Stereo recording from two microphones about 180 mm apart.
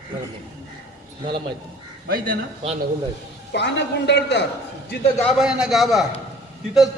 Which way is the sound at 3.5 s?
70° left (ahead or behind).